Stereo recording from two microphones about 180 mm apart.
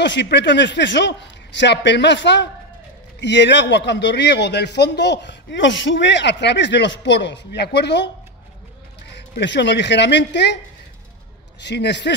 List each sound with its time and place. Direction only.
0.0 s a man's voice: 75° left (ahead or behind)
9.1 s a man's voice: 75° left (ahead or behind)
11.6 s a man's voice: 70° left (ahead or behind)